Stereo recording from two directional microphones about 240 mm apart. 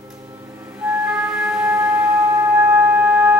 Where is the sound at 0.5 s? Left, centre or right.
Centre.